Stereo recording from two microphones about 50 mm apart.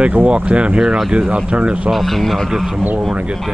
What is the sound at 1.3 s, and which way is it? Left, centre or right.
Speech, right.